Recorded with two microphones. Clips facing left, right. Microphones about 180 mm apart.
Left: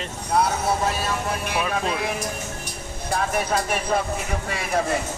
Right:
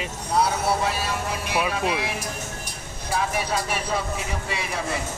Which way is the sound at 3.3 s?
50° left (ahead or behind).